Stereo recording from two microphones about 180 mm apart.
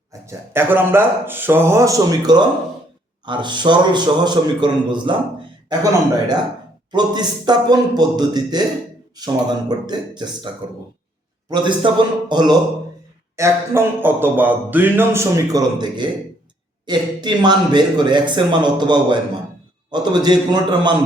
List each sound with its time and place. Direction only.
0.1 s music: 15° right (ahead or behind)
3.2 s speech: 25° right (ahead or behind)
13.3 s music: 15° right (ahead or behind)
16.8 s speech: 25° right (ahead or behind)